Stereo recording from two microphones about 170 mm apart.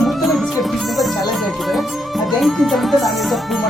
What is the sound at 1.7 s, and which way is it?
Speech, centre (ahead or behind).